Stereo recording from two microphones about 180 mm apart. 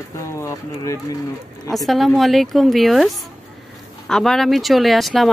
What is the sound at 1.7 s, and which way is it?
Speech, centre (ahead or behind).